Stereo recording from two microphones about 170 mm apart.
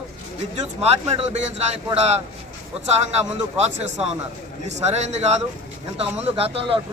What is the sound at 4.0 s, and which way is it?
A man's voice, 35° right (ahead or behind).